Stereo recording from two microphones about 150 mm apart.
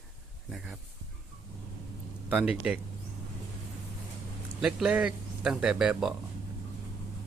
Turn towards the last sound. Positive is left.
turn(degrees=-5)  # may be behind; listen again after turning